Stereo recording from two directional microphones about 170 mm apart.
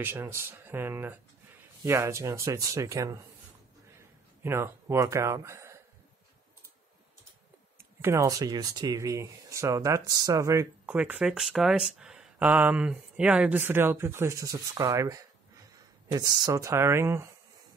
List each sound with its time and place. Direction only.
0.0 s speech: 15° right (ahead or behind)
4.4 s speech: 15° right (ahead or behind)
8.0 s speech: 15° right (ahead or behind)